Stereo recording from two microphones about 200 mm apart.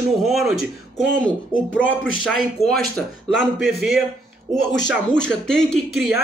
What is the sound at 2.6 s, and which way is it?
Speech, 30° left (ahead or behind).